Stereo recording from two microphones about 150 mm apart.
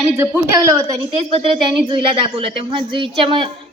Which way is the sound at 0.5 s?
20° right (ahead or behind).